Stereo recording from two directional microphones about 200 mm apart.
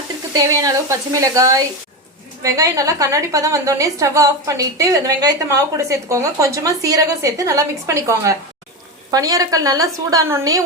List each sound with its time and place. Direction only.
0.3 s a woman's voice: 15° right (ahead or behind)